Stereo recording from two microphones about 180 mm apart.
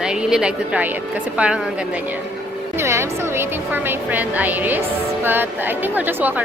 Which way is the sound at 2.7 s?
15° right (ahead or behind).